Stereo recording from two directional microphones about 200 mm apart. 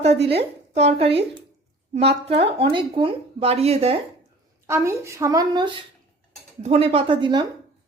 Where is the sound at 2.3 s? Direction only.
30° right (ahead or behind).